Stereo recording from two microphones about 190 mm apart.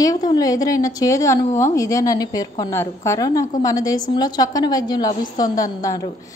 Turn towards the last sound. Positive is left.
turn(degrees=20)  # may be behind; listen again after turning